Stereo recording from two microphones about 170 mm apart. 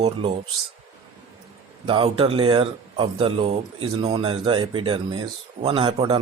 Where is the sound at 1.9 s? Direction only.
30° right (ahead or behind).